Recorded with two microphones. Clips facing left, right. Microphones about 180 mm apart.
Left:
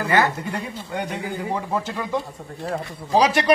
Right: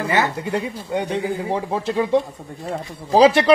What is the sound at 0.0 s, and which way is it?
A man's voice, 25° right (ahead or behind).